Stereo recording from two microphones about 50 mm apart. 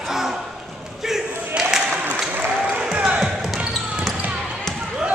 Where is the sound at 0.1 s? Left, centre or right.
Centre.